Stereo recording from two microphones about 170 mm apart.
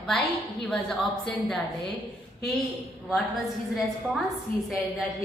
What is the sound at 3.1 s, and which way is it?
A woman's voice, centre (ahead or behind).